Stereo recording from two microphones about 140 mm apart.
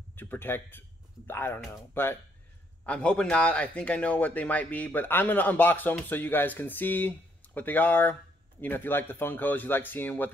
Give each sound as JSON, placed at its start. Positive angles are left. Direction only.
{"t": 0.1, "sound": "a man's voice", "side_deg": 15}